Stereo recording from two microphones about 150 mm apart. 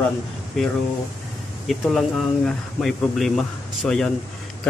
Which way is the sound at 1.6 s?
Centre (ahead or behind).